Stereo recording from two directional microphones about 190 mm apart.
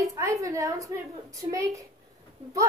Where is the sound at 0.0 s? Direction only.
15° right (ahead or behind).